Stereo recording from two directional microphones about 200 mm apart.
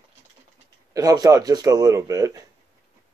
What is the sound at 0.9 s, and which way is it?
Speech, 20° right (ahead or behind).